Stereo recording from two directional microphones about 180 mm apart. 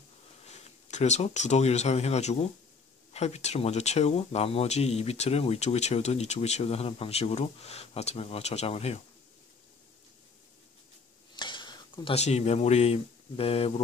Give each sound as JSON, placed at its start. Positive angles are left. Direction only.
{"t": 0.5, "sound": "speech", "side_deg": 40}
{"t": 11.3, "sound": "speech", "side_deg": 25}